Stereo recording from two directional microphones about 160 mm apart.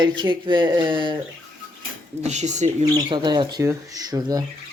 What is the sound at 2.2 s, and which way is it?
Speech, 45° right (ahead or behind).